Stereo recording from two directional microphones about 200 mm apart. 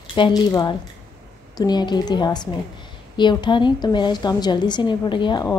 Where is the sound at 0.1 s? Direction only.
20° left (ahead or behind).